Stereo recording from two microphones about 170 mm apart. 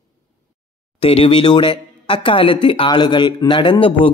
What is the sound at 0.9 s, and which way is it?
Speech, 35° left (ahead or behind).